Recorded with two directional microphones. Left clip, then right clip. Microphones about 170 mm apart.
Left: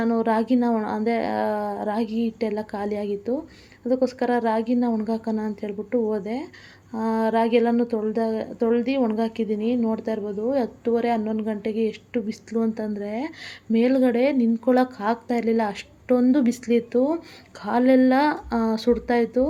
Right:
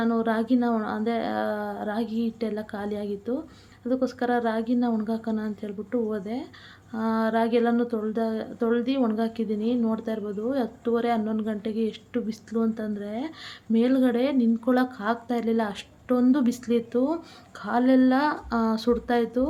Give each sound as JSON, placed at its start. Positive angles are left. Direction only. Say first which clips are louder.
{"t": 0.0, "sound": "a woman's voice", "louder": "left 3 dB", "side_deg": 15}